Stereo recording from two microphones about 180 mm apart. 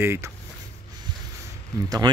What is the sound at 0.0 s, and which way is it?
Speech, 15° right (ahead or behind).